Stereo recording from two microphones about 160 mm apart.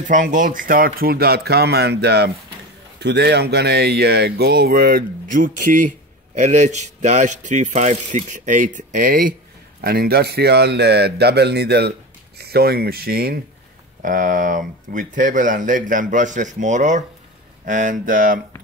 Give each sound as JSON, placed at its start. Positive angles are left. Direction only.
{"t": 0.1, "sound": "a man's voice", "side_deg": -55}
{"t": 9.8, "sound": "a man's voice", "side_deg": -75}
{"t": 14.0, "sound": "speech", "side_deg": -55}